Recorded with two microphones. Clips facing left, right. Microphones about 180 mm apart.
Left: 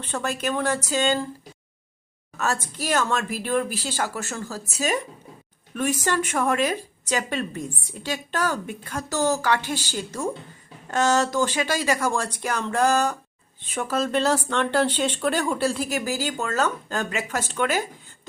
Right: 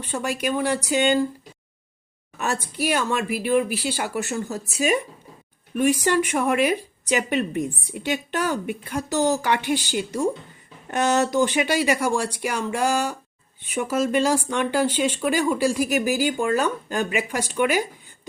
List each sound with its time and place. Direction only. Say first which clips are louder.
0.0 s speech: right 1 dB; 10° right (ahead or behind)
2.4 s speech: right 2 dB; 15° right (ahead or behind)
5.7 s speech: right 4 dB; 15° right (ahead or behind)